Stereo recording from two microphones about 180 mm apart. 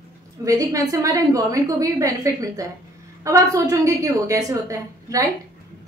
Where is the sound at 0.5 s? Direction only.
20° right (ahead or behind).